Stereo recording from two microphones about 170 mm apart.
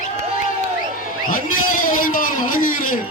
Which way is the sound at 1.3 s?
55° left (ahead or behind).